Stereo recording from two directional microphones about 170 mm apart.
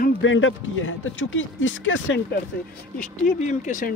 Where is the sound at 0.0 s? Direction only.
90° left.